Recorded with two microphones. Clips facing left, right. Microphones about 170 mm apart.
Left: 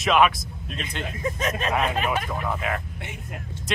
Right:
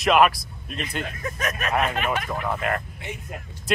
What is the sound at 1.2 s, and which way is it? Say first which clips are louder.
Speech: left 6 dB; 25° left (ahead or behind).